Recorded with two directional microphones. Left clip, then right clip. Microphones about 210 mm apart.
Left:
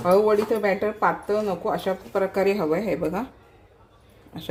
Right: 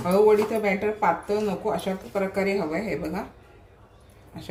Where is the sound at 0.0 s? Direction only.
30° left (ahead or behind).